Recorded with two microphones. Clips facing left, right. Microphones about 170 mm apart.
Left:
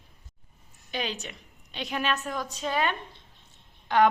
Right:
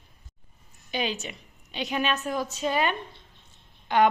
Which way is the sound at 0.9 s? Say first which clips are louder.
Right 3 dB; 5° right (ahead or behind).